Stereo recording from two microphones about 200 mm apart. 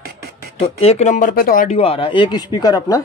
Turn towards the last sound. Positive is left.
turn(degrees=20)  # may be behind; listen again after turning